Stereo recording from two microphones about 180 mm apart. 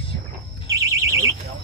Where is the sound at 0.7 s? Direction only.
20° right (ahead or behind).